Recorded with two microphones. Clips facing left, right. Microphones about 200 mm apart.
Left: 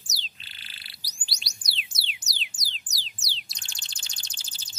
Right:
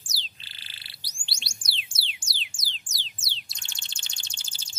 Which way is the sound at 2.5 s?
30° right (ahead or behind).